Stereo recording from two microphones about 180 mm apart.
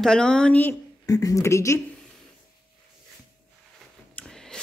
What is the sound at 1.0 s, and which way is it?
Speech, 20° left (ahead or behind).